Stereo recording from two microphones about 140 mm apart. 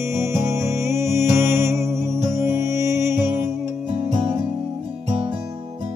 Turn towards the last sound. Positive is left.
turn(degrees=-35)  # may be behind; listen again after turning